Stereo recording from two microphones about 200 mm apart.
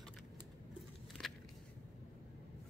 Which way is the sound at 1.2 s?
5° left (ahead or behind).